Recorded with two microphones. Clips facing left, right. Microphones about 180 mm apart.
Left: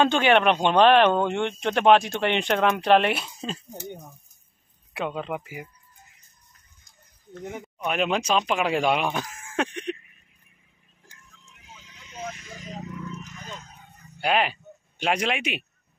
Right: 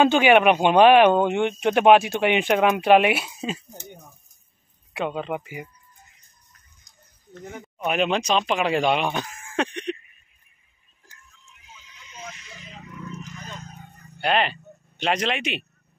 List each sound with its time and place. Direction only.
0.0 s speech: 10° right (ahead or behind)
4.9 s speech: centre (ahead or behind)
7.6 s speech: centre (ahead or behind)
9.6 s a sound: 5° left (ahead or behind)
11.4 s horse: 65° left (ahead or behind); by 12.9 s 40° left (ahead or behind)
13.2 s vehicle: 45° right (ahead or behind)
14.2 s speech: 5° left (ahead or behind)